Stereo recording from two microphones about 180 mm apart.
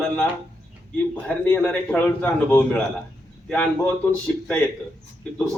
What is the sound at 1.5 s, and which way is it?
A man's voice, 10° left (ahead or behind).